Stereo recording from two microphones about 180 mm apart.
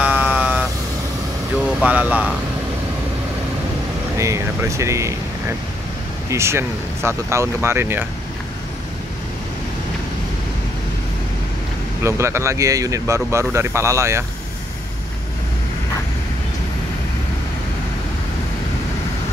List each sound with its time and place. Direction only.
0.0 s vehicle: 5° right (ahead or behind)
1.8 s speech: 10° right (ahead or behind)
4.2 s speech: 15° right (ahead or behind)
6.3 s speech: 15° right (ahead or behind)
12.0 s speech: 15° right (ahead or behind)